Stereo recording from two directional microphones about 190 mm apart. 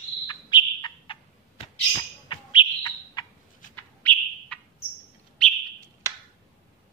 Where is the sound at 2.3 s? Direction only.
25° left (ahead or behind).